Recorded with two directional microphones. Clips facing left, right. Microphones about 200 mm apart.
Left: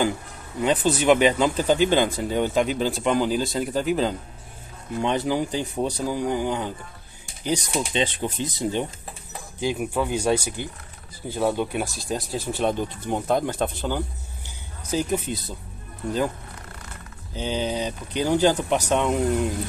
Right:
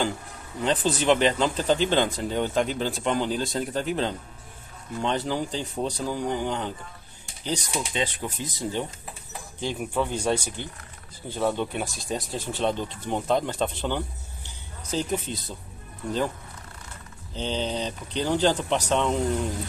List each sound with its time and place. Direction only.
0.6 s speech: 10° left (ahead or behind)
7.7 s speech: 25° left (ahead or behind)
9.6 s speech: 10° left (ahead or behind)
17.3 s speech: 10° left (ahead or behind)